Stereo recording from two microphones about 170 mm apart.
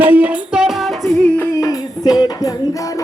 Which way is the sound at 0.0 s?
10° right (ahead or behind).